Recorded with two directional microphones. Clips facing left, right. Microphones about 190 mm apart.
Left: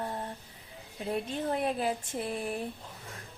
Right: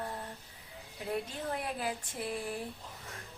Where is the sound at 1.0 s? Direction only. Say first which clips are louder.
Left 4 dB; 25° left (ahead or behind).